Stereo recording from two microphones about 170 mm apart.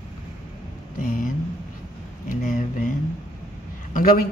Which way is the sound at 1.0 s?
50° left (ahead or behind).